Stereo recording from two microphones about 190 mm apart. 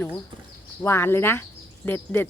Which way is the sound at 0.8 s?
15° left (ahead or behind).